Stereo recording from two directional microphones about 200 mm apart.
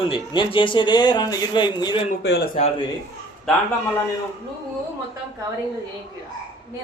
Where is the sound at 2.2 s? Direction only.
55° left (ahead or behind).